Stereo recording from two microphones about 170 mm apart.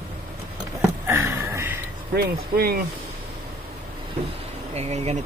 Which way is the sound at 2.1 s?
65° right (ahead or behind).